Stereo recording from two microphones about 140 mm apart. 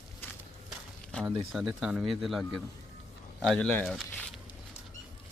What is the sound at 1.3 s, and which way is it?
Speech, 5° right (ahead or behind).